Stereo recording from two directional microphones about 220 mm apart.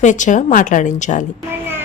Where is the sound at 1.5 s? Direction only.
10° right (ahead or behind).